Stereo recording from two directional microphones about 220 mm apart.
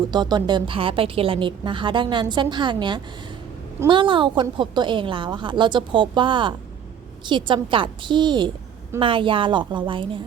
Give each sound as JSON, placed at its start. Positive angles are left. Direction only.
{"t": 0.1, "sound": "a woman's voice", "side_deg": -20}